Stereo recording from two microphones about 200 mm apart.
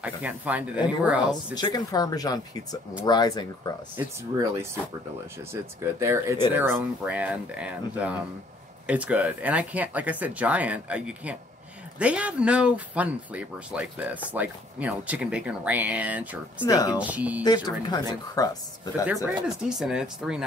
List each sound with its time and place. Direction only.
0.0 s speech: 5° right (ahead or behind)
1.5 s speech: 20° left (ahead or behind)
3.9 s speech: 10° right (ahead or behind)
16.6 s speech: 20° left (ahead or behind)
17.0 s speech: 5° right (ahead or behind)
17.6 s speech: 20° left (ahead or behind)
19.2 s speech: 5° right (ahead or behind)